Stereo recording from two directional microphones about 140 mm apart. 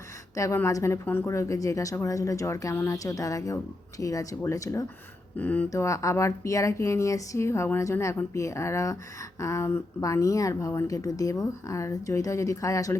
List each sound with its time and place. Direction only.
0.3 s speech: 20° left (ahead or behind)
5.4 s speech: 10° left (ahead or behind)
5.7 s speech: 20° left (ahead or behind)